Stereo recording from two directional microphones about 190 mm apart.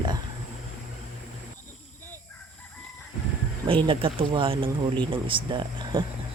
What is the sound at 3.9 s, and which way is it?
Speech, 25° right (ahead or behind).